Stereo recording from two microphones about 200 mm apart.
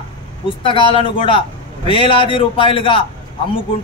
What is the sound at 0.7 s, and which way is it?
A man's voice, 25° left (ahead or behind).